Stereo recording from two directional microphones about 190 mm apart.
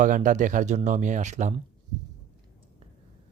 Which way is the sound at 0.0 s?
40° right (ahead or behind).